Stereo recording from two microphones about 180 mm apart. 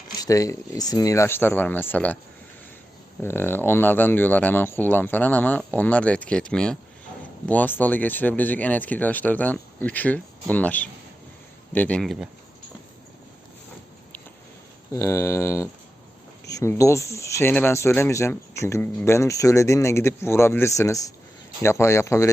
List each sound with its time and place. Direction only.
0.2 s speech: 20° left (ahead or behind)
3.2 s speech: 10° left (ahead or behind)
14.9 s speech: 15° left (ahead or behind)